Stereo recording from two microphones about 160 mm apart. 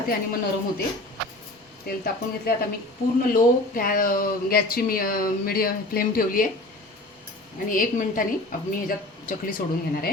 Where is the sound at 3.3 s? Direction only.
60° left (ahead or behind).